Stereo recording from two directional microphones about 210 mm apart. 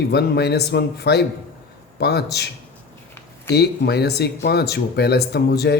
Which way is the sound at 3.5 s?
50° left (ahead or behind).